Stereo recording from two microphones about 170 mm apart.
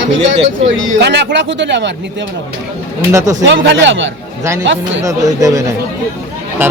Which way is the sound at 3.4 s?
90° right.